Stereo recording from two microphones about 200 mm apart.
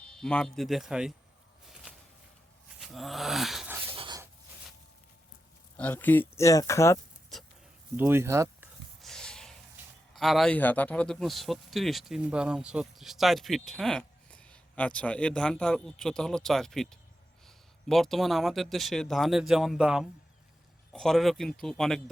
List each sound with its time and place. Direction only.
0.0 s speech: 5° left (ahead or behind)
2.8 s a sound: centre (ahead or behind)
3.9 s dog: 25° right (ahead or behind)
5.7 s speech: 10° left (ahead or behind)
7.9 s speech: 10° right (ahead or behind)
9.0 s a sound: centre (ahead or behind)
10.2 s speech: centre (ahead or behind)